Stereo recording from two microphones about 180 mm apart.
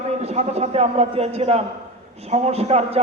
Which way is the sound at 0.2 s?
35° right (ahead or behind).